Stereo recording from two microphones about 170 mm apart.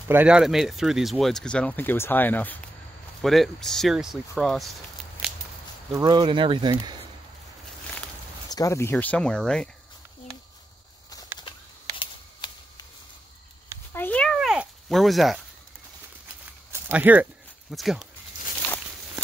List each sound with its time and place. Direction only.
0.1 s speech: 5° right (ahead or behind)
5.9 s speech: 20° right (ahead or behind)
8.5 s speech: 20° left (ahead or behind)
8.9 s speech: 5° left (ahead or behind)
12.0 s shuffling cards: 25° left (ahead or behind)
13.9 s a sound: 10° left (ahead or behind)
16.8 s speech: 10° right (ahead or behind)